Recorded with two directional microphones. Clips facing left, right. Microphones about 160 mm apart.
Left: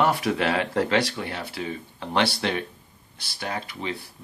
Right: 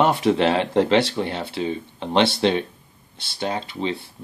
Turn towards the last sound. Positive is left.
turn(degrees=-25)  # may be behind; listen again after turning